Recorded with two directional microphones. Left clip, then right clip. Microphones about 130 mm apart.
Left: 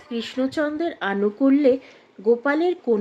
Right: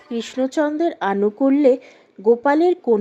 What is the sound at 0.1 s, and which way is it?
Speech, 45° right (ahead or behind).